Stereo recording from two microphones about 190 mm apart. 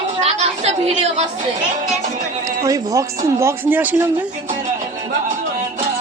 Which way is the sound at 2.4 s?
15° right (ahead or behind).